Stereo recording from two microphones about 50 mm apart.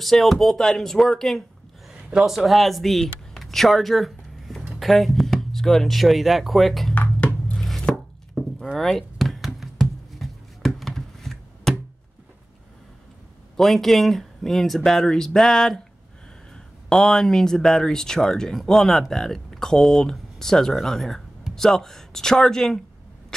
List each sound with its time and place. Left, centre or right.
0.0 s speech: centre
2.0 s speech: centre
2.3 s speech: centre
6.9 s a sound: left
7.5 s chopping: centre
8.4 s a sound: centre
8.7 s knock: centre
10.1 s a sound: centre
13.6 s speech: centre